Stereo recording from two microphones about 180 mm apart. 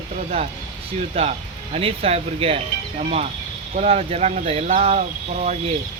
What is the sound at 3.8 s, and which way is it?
Speech, 35° right (ahead or behind).